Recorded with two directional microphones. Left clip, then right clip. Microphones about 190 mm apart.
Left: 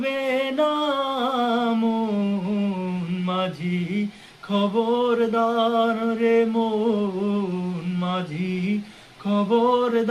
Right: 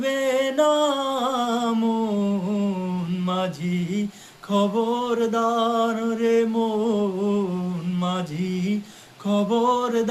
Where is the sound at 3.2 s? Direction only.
20° right (ahead or behind).